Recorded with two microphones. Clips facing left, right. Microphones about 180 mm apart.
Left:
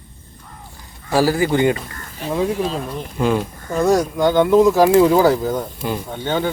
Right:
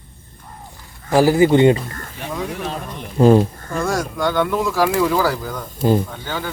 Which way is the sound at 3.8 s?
20° left (ahead or behind).